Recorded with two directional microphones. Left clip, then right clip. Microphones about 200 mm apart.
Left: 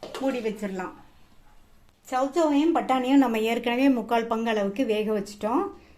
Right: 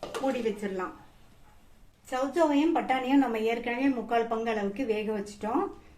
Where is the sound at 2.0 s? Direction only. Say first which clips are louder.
Left 3 dB; 30° left (ahead or behind).